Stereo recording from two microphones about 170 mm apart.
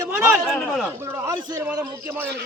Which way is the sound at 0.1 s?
15° right (ahead or behind).